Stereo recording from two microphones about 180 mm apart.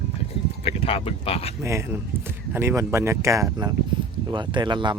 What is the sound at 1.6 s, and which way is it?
Speech, 15° right (ahead or behind).